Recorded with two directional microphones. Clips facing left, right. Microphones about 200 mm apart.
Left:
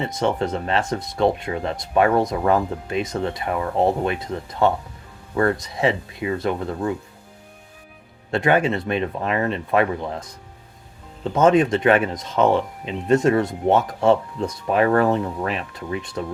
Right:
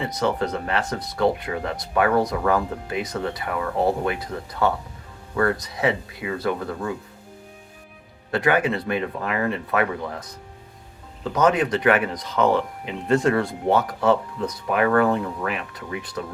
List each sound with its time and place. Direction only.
0.0 s speech: 25° left (ahead or behind)
8.3 s speech: 25° left (ahead or behind)